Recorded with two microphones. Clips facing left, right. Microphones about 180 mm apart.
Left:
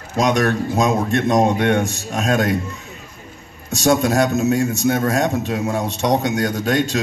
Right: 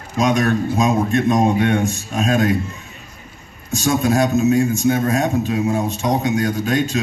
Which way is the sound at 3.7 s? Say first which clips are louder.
Left 1 dB; 75° left (ahead or behind).